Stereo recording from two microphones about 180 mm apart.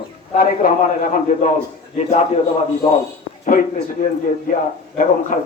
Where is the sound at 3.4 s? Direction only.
50° left (ahead or behind).